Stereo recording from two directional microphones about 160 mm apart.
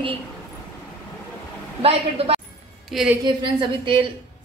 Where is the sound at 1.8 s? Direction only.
40° right (ahead or behind).